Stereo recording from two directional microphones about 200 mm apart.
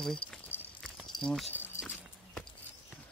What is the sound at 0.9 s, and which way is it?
Walk, centre (ahead or behind).